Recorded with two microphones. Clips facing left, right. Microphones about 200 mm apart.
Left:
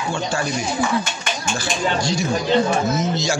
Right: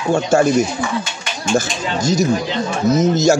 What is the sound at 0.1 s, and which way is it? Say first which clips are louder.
Speech: right 12 dB; 45° right (ahead or behind).